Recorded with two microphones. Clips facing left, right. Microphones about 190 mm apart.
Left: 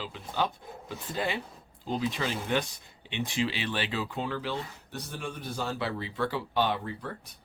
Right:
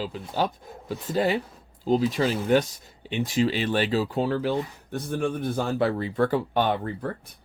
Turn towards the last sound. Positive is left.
turn(degrees=-50)  # may be behind; listen again after turning